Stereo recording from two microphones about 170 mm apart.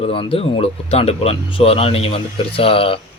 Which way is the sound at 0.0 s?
30° left (ahead or behind).